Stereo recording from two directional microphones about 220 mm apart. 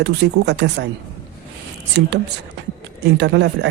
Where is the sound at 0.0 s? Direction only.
50° right (ahead or behind).